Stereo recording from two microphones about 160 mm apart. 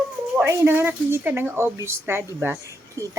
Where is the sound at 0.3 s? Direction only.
10° right (ahead or behind).